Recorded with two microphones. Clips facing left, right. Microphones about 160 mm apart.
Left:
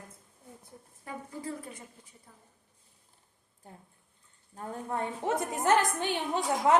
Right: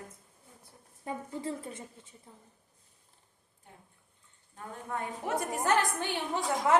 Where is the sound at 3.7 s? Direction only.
40° left (ahead or behind).